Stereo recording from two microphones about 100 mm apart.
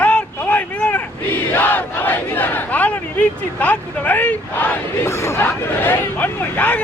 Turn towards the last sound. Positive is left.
turn(degrees=15)  # may be behind; listen again after turning